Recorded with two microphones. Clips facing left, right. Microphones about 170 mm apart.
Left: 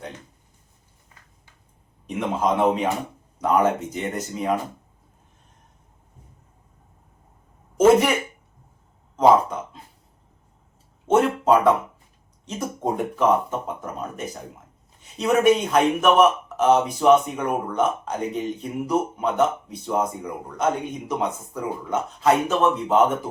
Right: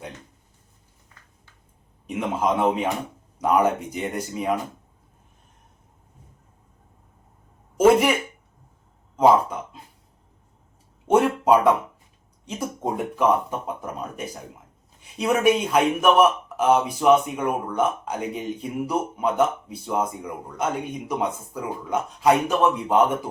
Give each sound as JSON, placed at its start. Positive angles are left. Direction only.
{"t": 2.0, "sound": "speech", "side_deg": -5}
{"t": 7.8, "sound": "speech", "side_deg": -10}
{"t": 11.1, "sound": "speech", "side_deg": -10}
{"t": 15.0, "sound": "speech", "side_deg": -10}